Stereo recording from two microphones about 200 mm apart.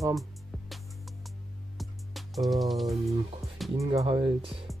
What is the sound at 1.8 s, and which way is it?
Music, centre (ahead or behind).